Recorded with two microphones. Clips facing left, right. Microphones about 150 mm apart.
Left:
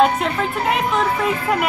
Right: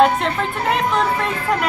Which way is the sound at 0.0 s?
Centre (ahead or behind).